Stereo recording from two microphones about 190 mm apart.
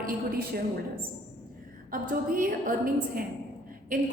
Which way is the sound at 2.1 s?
45° right (ahead or behind).